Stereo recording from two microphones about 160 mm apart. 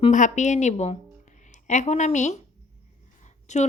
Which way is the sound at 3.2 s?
45° left (ahead or behind).